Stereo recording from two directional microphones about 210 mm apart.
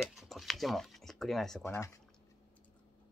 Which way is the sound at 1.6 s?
15° left (ahead or behind).